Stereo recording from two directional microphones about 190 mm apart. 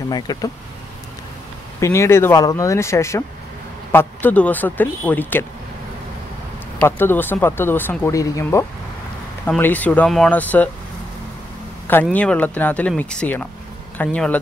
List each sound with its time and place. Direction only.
0.1 s speech: 20° left (ahead or behind)
1.8 s speech: 15° left (ahead or behind)
6.8 s speech: 10° left (ahead or behind)
11.9 s speech: 10° left (ahead or behind)